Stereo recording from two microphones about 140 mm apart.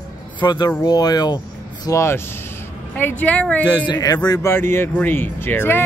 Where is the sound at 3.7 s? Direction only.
30° left (ahead or behind).